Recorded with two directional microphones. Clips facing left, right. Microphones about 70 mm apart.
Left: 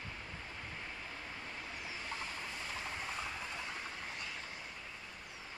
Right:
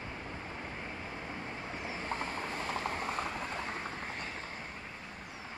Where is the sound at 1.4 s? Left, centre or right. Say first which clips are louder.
Right 5 dB; right.